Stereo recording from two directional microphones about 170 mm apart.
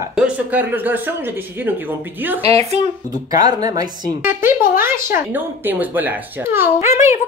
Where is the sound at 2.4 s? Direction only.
35° right (ahead or behind).